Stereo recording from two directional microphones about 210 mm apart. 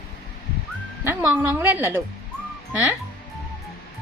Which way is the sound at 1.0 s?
10° right (ahead or behind).